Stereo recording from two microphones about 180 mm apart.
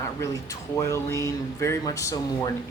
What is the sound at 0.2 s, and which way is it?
Speech, 15° left (ahead or behind).